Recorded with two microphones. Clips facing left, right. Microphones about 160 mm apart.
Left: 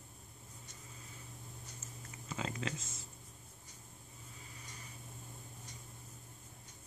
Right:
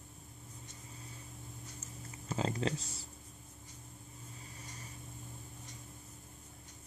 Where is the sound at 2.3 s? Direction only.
35° right (ahead or behind).